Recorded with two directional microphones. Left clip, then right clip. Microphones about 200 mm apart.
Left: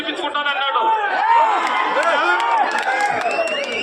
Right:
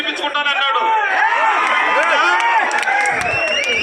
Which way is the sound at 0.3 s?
Centre (ahead or behind).